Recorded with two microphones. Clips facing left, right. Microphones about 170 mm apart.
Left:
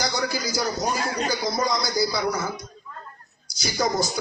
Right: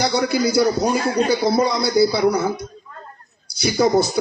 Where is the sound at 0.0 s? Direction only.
60° right (ahead or behind).